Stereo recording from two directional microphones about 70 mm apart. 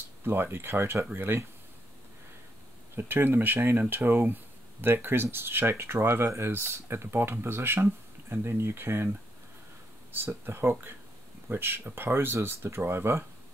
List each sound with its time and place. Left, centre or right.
0.2 s speech: right
3.0 s speech: right
10.1 s speech: right